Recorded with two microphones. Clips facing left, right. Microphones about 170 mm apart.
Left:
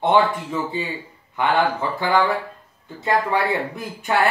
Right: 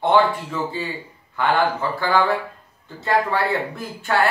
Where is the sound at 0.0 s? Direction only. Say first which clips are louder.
Even; 20° left (ahead or behind).